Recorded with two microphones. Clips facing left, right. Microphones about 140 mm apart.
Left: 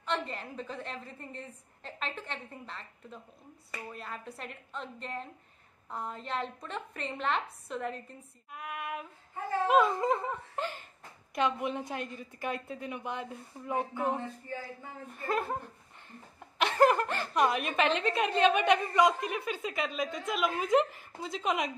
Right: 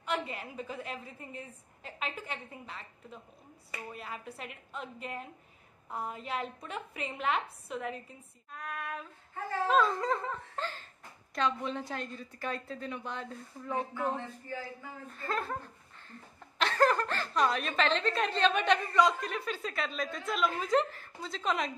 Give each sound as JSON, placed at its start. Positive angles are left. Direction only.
{"t": 0.0, "sound": "a woman's voice", "side_deg": -5}
{"t": 8.5, "sound": "a woman's voice", "side_deg": 10}